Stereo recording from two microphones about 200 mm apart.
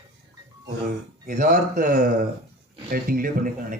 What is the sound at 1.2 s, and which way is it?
A man's voice, 40° right (ahead or behind).